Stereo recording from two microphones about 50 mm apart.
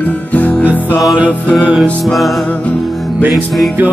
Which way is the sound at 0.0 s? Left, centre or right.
Left.